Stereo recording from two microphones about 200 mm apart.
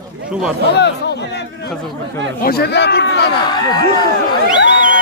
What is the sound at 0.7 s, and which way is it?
Speech, 60° left (ahead or behind).